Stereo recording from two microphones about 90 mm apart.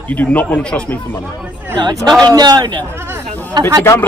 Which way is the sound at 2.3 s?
50° right (ahead or behind).